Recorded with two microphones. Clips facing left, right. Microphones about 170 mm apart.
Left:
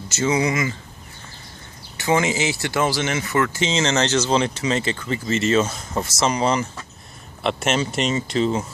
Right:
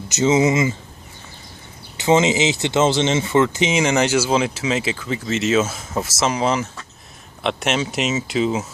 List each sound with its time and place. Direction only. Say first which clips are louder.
0.1 s speech: right 5 dB; 20° right (ahead or behind)
2.0 s speech: right 4 dB; 20° right (ahead or behind); by 8.6 s 5° right (ahead or behind)